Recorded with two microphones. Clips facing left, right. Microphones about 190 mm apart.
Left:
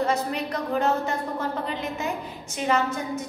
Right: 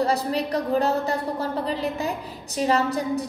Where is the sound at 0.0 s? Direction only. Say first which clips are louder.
Right 2 dB; 35° right (ahead or behind).